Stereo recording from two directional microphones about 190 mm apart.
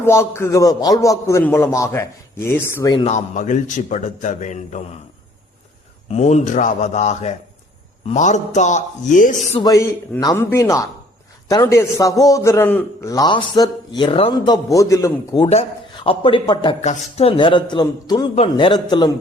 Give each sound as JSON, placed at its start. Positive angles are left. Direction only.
{"t": 0.0, "sound": "a man's voice", "side_deg": 15}
{"t": 2.9, "sound": "a man's voice", "side_deg": 35}
{"t": 6.1, "sound": "a man's voice", "side_deg": 35}
{"t": 9.6, "sound": "a man's voice", "side_deg": 20}